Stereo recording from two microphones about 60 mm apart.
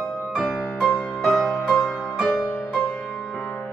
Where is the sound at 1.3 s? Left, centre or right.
Centre.